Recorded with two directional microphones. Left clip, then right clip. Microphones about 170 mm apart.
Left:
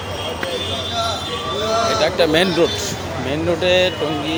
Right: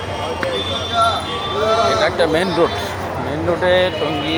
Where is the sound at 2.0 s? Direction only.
35° left (ahead or behind).